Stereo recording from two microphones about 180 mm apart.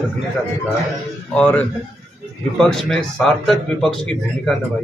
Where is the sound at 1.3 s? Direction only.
10° left (ahead or behind).